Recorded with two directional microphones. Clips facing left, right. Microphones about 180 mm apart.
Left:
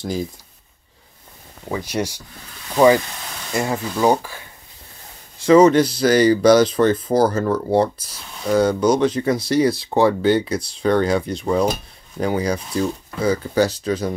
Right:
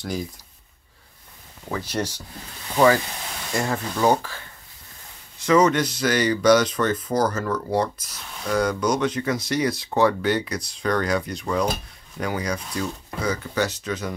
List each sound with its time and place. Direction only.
0.0 s speech: 25° left (ahead or behind)
1.7 s speech: 10° left (ahead or behind)
3.6 s speech: 15° left (ahead or behind)
5.4 s speech: 30° left (ahead or behind)